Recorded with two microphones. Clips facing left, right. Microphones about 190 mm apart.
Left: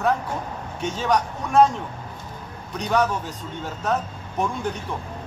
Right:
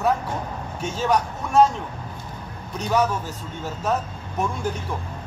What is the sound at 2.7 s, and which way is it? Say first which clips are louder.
Speech: even; 5° right (ahead or behind).